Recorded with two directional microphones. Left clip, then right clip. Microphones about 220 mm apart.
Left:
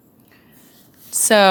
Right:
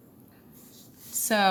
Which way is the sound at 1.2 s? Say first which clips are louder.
Left 11 dB; 40° left (ahead or behind).